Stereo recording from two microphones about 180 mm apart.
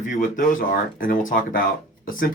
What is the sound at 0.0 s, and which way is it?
Speech, 45° left (ahead or behind).